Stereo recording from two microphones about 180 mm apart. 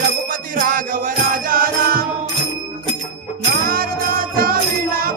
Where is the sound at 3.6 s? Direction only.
55° right (ahead or behind).